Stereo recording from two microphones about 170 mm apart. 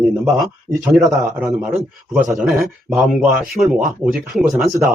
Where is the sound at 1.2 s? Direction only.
15° right (ahead or behind).